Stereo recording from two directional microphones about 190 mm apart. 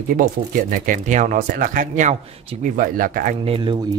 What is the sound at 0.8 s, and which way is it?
Speech, 45° right (ahead or behind).